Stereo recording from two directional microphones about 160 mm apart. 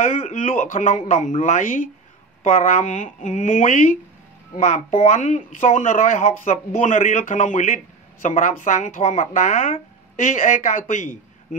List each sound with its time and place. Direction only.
0.2 s speech: 50° left (ahead or behind)
4.6 s speech: 45° left (ahead or behind)